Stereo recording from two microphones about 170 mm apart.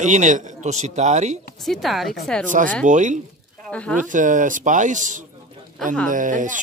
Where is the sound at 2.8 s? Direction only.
45° right (ahead or behind).